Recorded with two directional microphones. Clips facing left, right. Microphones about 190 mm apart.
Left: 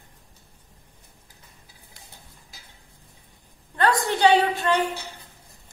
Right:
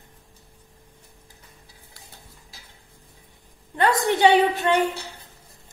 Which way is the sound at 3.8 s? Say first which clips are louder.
Right 1 dB; 20° right (ahead or behind).